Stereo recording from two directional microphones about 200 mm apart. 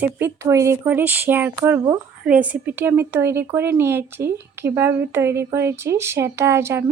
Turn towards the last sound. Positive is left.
turn(degrees=-10)  # may be behind; listen again after turning